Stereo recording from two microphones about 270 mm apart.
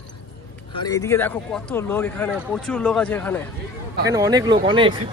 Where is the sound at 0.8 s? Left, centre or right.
Centre.